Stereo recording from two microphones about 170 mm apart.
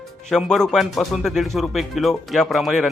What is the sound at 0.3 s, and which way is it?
A man's voice, 5° left (ahead or behind).